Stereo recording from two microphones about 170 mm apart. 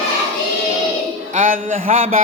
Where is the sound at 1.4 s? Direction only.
50° right (ahead or behind).